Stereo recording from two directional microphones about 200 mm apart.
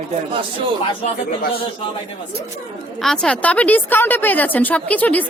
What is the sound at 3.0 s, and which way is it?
A woman's voice, 5° left (ahead or behind).